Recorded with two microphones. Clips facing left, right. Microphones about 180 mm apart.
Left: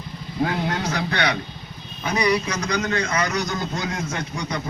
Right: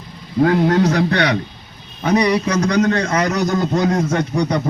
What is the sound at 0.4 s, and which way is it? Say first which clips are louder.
A man's voice: right 10 dB; 40° right (ahead or behind).